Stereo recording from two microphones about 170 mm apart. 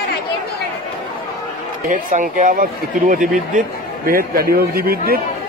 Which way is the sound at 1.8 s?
50° right (ahead or behind).